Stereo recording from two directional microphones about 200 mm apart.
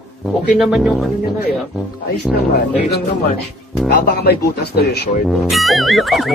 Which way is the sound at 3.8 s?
50° left (ahead or behind).